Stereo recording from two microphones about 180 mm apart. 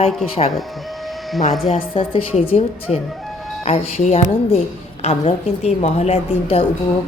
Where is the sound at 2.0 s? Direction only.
35° left (ahead or behind).